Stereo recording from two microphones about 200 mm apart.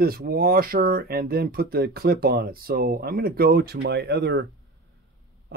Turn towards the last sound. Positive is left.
turn(degrees=-55)  # may be behind; listen again after turning